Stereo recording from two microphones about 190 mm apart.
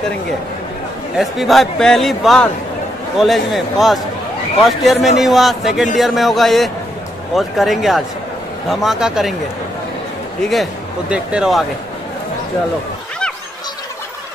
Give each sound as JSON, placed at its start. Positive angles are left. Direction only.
{"t": 1.1, "sound": "speech", "side_deg": 0}
{"t": 10.4, "sound": "speech", "side_deg": 0}